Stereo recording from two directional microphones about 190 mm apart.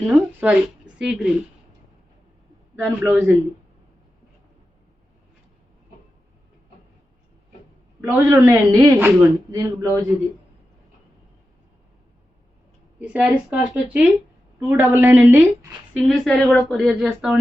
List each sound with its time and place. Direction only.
0.1 s a woman's voice: 10° right (ahead or behind)
2.7 s a woman's voice: 15° right (ahead or behind)
8.0 s a woman's voice: 15° right (ahead or behind)
13.0 s a woman's voice: 5° right (ahead or behind)
16.1 s speech: 5° left (ahead or behind)